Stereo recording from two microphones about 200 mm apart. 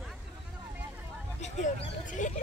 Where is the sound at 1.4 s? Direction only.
35° left (ahead or behind).